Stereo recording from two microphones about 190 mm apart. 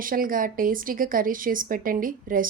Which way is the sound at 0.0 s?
45° right (ahead or behind).